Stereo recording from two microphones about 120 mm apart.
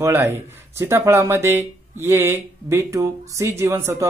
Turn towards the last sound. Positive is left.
turn(degrees=-20)  # may be behind; listen again after turning